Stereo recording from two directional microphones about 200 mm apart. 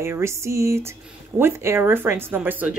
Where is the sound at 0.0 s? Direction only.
15° right (ahead or behind).